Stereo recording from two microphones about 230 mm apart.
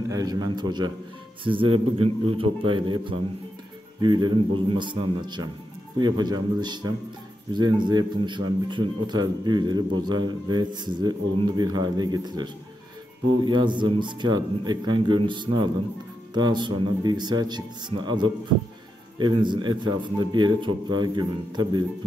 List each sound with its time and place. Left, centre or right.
0.1 s a man's voice: centre
4.0 s speech: centre
13.5 s speech: centre